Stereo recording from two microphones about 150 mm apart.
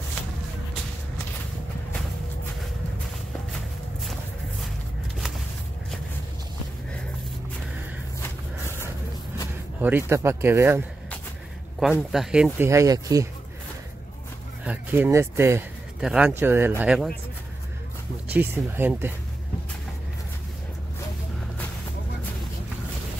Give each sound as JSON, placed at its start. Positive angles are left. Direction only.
{"t": 9.8, "sound": "speech", "side_deg": -15}
{"t": 11.8, "sound": "speech", "side_deg": -5}
{"t": 12.5, "sound": "speech", "side_deg": -20}
{"t": 14.6, "sound": "speech", "side_deg": -10}
{"t": 16.0, "sound": "speech", "side_deg": -5}
{"t": 16.3, "sound": "speech", "side_deg": -15}
{"t": 18.3, "sound": "speech", "side_deg": -15}